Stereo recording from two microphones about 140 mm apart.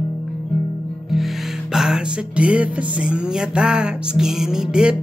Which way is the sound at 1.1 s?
Centre (ahead or behind).